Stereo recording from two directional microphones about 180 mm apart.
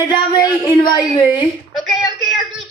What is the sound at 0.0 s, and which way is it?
Speech, 25° left (ahead or behind).